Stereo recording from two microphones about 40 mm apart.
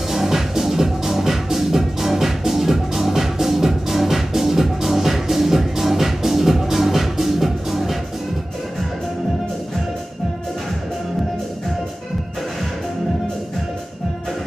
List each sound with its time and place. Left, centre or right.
0.1 s music: centre